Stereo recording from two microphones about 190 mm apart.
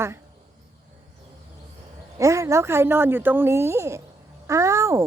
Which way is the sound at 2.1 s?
15° right (ahead or behind).